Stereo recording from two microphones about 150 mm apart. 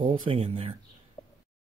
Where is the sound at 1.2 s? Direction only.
25° left (ahead or behind).